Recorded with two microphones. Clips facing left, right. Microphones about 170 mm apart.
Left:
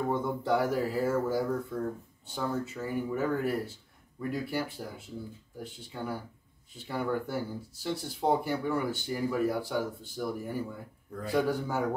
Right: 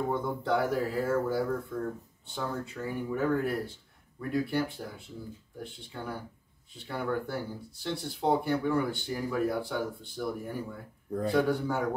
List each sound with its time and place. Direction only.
0.1 s speech: 5° left (ahead or behind)
11.1 s a man's voice: 30° right (ahead or behind)
11.3 s speech: 5° left (ahead or behind)